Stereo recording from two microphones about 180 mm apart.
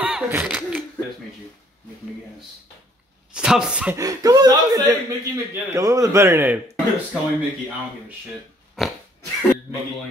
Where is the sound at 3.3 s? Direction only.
5° right (ahead or behind).